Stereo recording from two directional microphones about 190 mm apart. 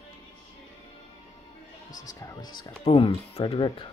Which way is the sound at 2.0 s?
20° left (ahead or behind).